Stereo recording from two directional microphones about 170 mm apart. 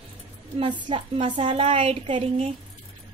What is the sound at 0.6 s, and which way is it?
A woman's voice, 25° right (ahead or behind).